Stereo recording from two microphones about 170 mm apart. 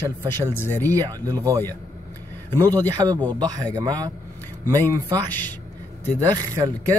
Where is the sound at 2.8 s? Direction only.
20° right (ahead or behind).